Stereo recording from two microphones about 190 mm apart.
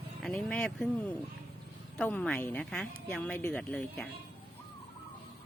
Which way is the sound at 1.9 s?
5° left (ahead or behind).